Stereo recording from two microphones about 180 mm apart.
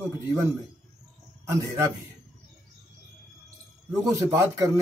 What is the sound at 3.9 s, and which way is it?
Speech, 20° right (ahead or behind).